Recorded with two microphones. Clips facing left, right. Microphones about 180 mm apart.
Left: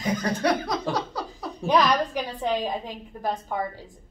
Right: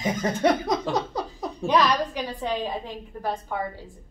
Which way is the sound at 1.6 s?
10° left (ahead or behind).